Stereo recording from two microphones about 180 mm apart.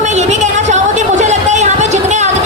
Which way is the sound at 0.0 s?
40° right (ahead or behind).